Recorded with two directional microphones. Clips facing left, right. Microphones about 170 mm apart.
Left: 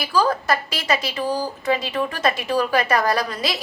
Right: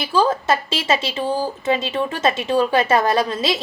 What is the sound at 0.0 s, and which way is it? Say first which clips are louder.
A woman's voice: right 2 dB; 25° right (ahead or behind).